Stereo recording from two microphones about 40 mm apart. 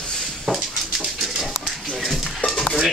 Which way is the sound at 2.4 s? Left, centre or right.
Left.